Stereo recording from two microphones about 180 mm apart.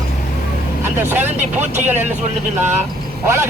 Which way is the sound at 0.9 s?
10° right (ahead or behind).